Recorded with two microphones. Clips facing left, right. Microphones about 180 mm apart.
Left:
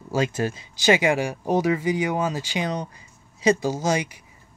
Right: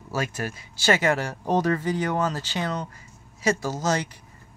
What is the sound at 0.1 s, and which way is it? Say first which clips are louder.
Speech: left 5 dB; 20° left (ahead or behind).